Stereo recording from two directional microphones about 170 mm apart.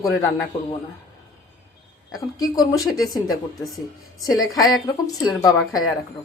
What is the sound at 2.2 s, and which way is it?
A woman's voice, 20° left (ahead or behind).